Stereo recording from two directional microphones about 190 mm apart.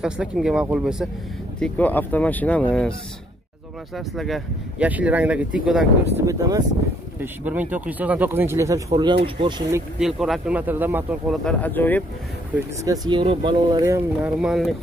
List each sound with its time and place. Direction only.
0.0 s speech: 5° right (ahead or behind)
1.6 s speech: 10° left (ahead or behind)
3.9 s speech: centre (ahead or behind)
6.1 s speech: 15° right (ahead or behind)
9.9 s speech: centre (ahead or behind)
11.4 s speech: 10° left (ahead or behind)
12.5 s speech: 20° right (ahead or behind)
14.4 s speech: centre (ahead or behind)